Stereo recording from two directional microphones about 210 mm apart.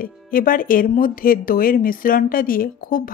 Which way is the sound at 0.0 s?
40° left (ahead or behind).